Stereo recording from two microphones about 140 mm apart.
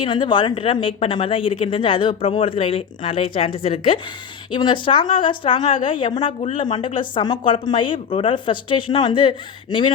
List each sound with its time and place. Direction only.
0.0 s speech: 35° left (ahead or behind)